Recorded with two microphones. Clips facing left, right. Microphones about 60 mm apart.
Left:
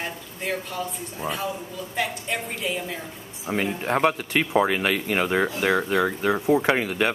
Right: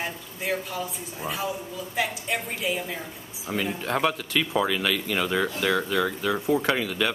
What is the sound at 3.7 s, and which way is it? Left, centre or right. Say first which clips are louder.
Speech: left 4 dB; left.